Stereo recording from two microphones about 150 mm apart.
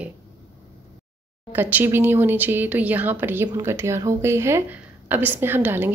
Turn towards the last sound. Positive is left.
turn(degrees=-15)  # may be behind; listen again after turning